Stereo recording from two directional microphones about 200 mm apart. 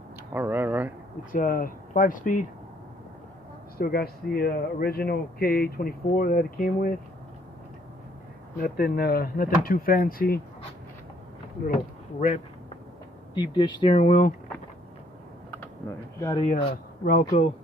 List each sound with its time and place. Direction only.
0.3 s speech: 10° right (ahead or behind)
1.3 s speech: 45° left (ahead or behind)
3.7 s speech: 50° left (ahead or behind)
8.6 s speech: 50° left (ahead or behind)
11.6 s speech: 45° left (ahead or behind)
13.3 s speech: 20° left (ahead or behind)
16.3 s speech: 25° left (ahead or behind)